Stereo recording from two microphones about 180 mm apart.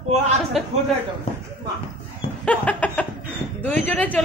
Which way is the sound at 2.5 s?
5° left (ahead or behind).